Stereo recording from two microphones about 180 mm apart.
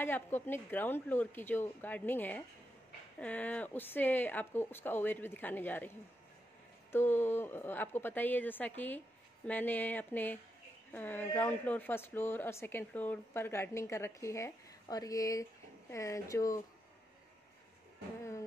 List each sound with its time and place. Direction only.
0.0 s speech: 10° left (ahead or behind)
6.9 s speech: 10° left (ahead or behind)